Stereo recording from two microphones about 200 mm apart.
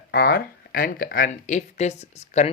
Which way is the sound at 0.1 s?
50° left (ahead or behind).